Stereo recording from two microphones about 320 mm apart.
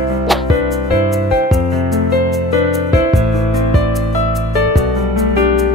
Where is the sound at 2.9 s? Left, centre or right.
Centre.